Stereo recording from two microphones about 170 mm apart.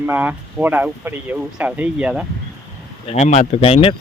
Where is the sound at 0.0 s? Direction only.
10° right (ahead or behind).